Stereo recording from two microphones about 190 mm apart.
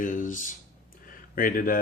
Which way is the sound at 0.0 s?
45° left (ahead or behind).